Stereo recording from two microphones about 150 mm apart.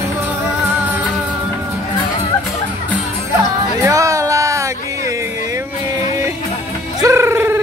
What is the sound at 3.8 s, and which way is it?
Music, 20° right (ahead or behind).